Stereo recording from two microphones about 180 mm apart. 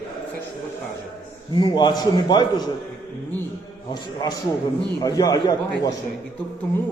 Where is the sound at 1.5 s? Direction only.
25° left (ahead or behind).